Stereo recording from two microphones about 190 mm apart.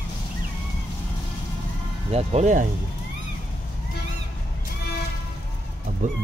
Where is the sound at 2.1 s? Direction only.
35° right (ahead or behind).